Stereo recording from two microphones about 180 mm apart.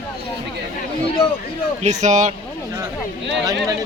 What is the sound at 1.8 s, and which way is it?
Speech, 40° right (ahead or behind).